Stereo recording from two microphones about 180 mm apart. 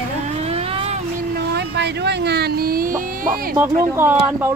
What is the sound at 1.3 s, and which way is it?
Speech, 65° right (ahead or behind).